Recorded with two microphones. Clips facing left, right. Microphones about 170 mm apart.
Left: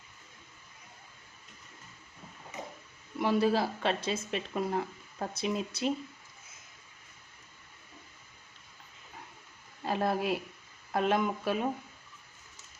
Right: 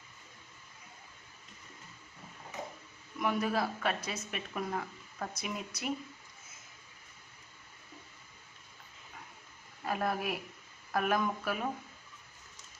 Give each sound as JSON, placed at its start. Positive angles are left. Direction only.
{"t": 3.2, "sound": "speech", "side_deg": 30}
{"t": 9.8, "sound": "a woman's voice", "side_deg": 30}